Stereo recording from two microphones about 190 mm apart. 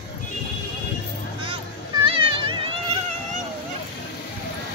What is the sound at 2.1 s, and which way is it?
Music, 30° right (ahead or behind).